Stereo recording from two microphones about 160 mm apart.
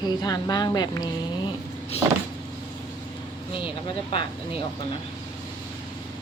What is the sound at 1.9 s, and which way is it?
Vehicle, 40° left (ahead or behind).